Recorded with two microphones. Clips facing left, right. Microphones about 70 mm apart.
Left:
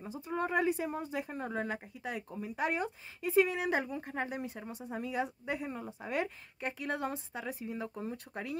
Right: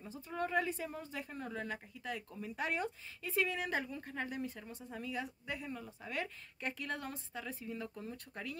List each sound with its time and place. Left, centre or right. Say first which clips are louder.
0.1 s speech: left 3 dB; left